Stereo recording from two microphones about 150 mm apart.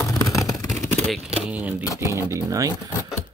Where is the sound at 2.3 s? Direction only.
20° right (ahead or behind).